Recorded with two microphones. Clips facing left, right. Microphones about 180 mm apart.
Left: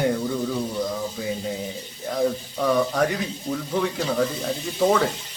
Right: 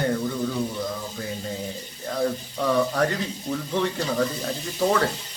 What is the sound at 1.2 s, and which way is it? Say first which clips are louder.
Speech: left 3 dB; 10° left (ahead or behind).